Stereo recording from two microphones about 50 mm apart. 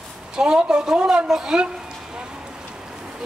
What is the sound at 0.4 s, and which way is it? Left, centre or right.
Speech, centre.